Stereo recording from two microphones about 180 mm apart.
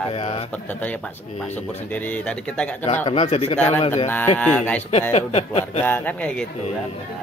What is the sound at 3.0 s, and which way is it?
Speech, 30° left (ahead or behind).